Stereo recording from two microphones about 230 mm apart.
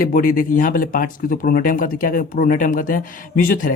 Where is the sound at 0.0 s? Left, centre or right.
Left.